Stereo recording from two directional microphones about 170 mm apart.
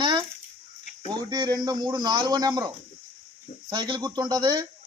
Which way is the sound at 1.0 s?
25° right (ahead or behind).